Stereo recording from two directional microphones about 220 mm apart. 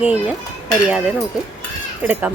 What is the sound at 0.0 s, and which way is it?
Speech, 5° right (ahead or behind).